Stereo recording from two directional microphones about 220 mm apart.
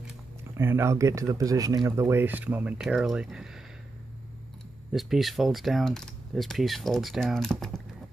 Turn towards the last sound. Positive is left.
turn(degrees=0)  # may be behind; listen again after turning